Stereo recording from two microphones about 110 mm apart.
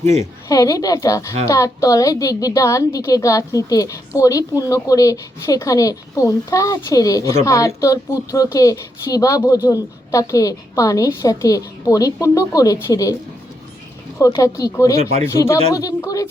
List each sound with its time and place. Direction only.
0.0 s a woman's voice: 90° right
0.4 s a woman's voice: 30° left (ahead or behind)
14.2 s a woman's voice: 35° left (ahead or behind)
14.9 s speech: 75° right (ahead or behind)
15.3 s a woman's voice: 25° left (ahead or behind)